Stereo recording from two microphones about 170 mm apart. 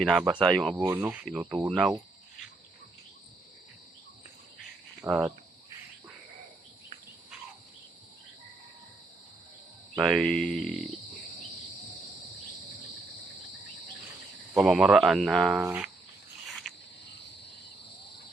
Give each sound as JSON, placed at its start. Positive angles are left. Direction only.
{"t": 0.0, "sound": "speech", "side_deg": -5}
{"t": 0.8, "sound": "speech", "side_deg": -15}
{"t": 5.0, "sound": "speech", "side_deg": -15}
{"t": 9.9, "sound": "speech", "side_deg": -5}
{"t": 14.5, "sound": "speech", "side_deg": 0}
{"t": 16.7, "sound": "cricket", "side_deg": 0}